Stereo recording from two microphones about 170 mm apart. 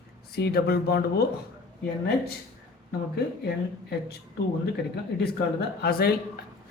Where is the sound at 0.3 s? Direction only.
65° left (ahead or behind).